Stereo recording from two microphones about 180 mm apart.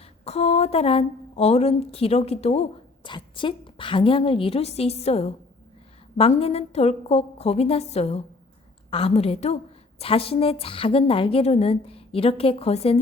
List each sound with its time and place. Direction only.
0.0 s a woman's voice: 35° left (ahead or behind)